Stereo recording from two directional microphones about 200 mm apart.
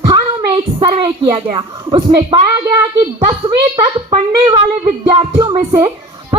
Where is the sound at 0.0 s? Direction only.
25° right (ahead or behind).